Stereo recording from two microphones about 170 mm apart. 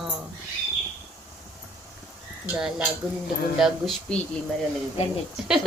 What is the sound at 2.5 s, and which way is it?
Speech, 5° right (ahead or behind).